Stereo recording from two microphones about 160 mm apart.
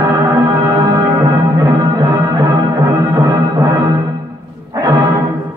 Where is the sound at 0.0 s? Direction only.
20° right (ahead or behind).